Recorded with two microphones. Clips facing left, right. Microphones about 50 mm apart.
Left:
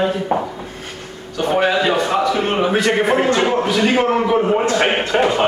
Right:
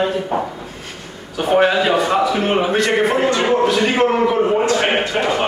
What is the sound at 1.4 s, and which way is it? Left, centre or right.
Speech, centre.